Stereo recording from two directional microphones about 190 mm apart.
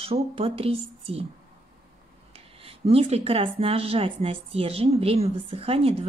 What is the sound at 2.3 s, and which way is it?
Speech, 30° right (ahead or behind).